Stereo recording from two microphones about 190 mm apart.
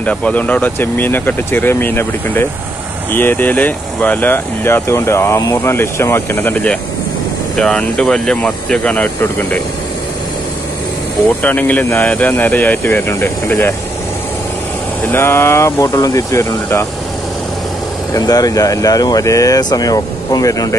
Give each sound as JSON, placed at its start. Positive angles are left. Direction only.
{"t": 0.0, "sound": "speech", "side_deg": 5}
{"t": 11.4, "sound": "speech", "side_deg": 10}
{"t": 15.0, "sound": "speech", "side_deg": 15}
{"t": 18.1, "sound": "speech", "side_deg": 20}